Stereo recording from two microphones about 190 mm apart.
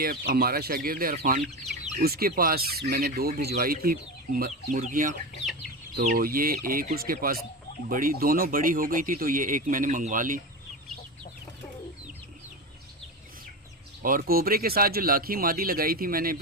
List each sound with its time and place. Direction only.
0.0 s speech: 50° right (ahead or behind)
6.1 s speech: 50° right (ahead or behind)
14.0 s speech: 50° right (ahead or behind)